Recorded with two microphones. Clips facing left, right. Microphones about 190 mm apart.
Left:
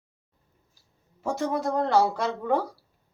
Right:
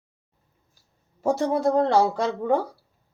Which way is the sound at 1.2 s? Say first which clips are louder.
Right 5 dB; 35° right (ahead or behind).